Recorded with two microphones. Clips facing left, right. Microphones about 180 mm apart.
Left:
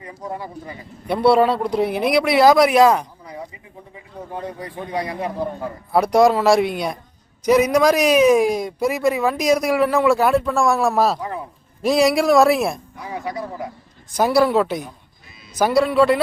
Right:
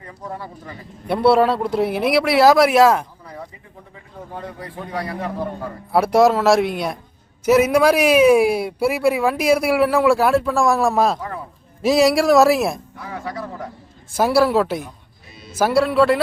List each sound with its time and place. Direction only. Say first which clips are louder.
0.0 s speech: left 2 dB; 15° left (ahead or behind)
1.0 s a man's voice: even; centre (ahead or behind)
3.9 s a man's voice: left 2 dB; 20° left (ahead or behind)
5.9 s a man's voice: even; 5° right (ahead or behind)
11.2 s speech: left 2 dB; 15° left (ahead or behind)
11.8 s a man's voice: right 1 dB; centre (ahead or behind)
13.0 s speech: left 1 dB; 15° left (ahead or behind)
14.2 s a man's voice: even; 5° right (ahead or behind)